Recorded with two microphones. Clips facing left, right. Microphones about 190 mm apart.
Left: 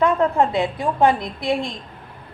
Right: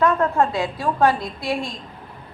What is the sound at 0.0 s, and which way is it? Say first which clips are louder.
A woman's voice: left 1 dB; 20° left (ahead or behind).